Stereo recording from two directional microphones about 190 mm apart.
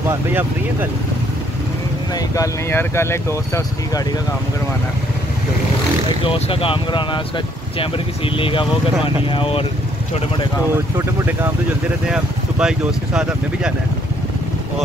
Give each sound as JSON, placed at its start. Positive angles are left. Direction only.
{"t": 0.1, "sound": "speech", "side_deg": -10}
{"t": 2.1, "sound": "speech", "side_deg": 15}
{"t": 6.2, "sound": "speech", "side_deg": 30}
{"t": 12.1, "sound": "speech", "side_deg": -5}